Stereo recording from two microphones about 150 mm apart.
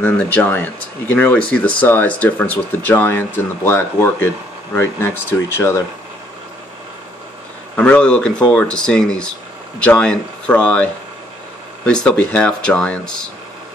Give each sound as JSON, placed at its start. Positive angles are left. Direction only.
{"t": 0.0, "sound": "speech", "side_deg": 10}
{"t": 7.7, "sound": "speech", "side_deg": 10}